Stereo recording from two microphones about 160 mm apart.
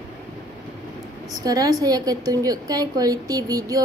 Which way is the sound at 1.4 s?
20° right (ahead or behind).